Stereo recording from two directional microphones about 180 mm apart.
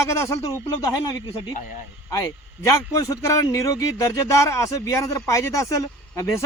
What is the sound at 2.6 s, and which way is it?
A man's voice, 15° left (ahead or behind).